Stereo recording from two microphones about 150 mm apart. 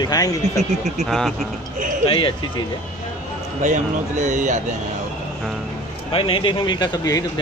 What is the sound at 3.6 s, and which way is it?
Speech, 55° right (ahead or behind).